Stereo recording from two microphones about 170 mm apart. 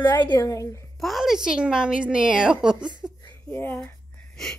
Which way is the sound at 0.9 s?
Centre (ahead or behind).